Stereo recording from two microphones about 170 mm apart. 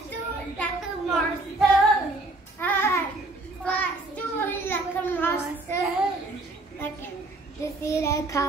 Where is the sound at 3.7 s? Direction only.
10° left (ahead or behind).